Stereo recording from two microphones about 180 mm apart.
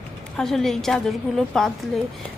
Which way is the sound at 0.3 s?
Centre (ahead or behind).